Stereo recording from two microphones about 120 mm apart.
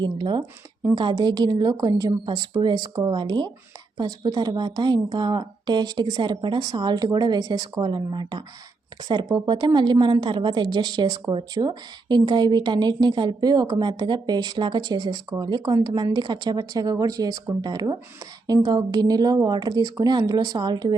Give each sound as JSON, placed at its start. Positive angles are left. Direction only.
{"t": 0.0, "sound": "a woman's voice", "side_deg": -40}